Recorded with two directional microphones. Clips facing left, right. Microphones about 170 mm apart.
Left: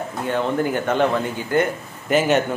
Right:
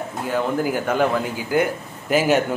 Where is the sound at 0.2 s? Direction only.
5° right (ahead or behind).